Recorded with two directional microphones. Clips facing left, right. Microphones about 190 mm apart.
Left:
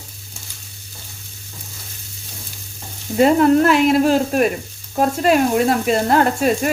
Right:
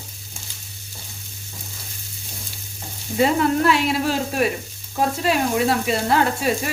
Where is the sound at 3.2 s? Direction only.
50° left (ahead or behind).